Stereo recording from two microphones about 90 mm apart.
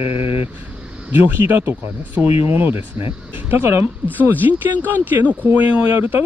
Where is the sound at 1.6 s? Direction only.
25° right (ahead or behind).